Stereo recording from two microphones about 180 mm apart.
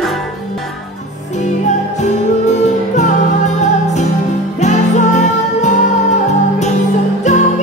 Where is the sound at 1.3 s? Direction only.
40° left (ahead or behind).